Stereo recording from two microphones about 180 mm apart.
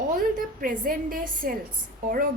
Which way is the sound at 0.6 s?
50° right (ahead or behind).